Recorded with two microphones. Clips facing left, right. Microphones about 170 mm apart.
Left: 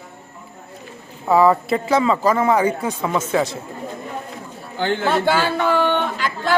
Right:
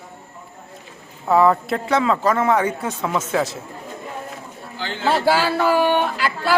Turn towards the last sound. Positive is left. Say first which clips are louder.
# right 1 dB
turn(degrees=-5)  # may be behind; listen again after turning